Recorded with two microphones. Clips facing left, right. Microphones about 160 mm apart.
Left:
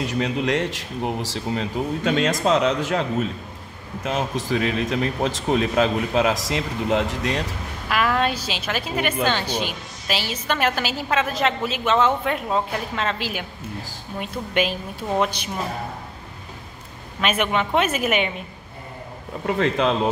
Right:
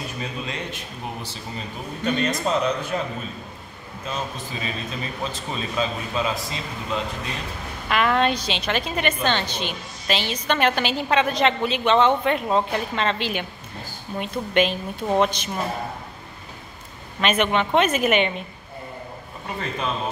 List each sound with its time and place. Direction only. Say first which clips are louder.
0.0 s speech: left 8 dB; 80° left
7.9 s a woman's voice: right 1 dB; 5° left (ahead or behind)
17.2 s speech: right 1 dB; 5° left (ahead or behind)
19.4 s speech: left 8 dB; 85° left